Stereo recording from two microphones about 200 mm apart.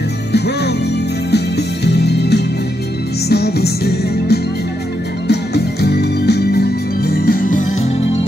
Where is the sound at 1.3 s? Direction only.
55° left (ahead or behind); by 7.9 s 40° left (ahead or behind).